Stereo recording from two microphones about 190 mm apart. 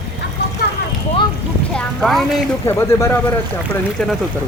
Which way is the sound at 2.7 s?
10° left (ahead or behind).